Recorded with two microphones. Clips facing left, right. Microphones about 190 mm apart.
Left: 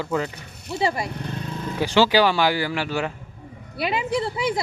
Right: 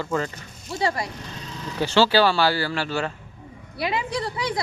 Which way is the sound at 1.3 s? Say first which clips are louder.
Left 5 dB; 55° left (ahead or behind).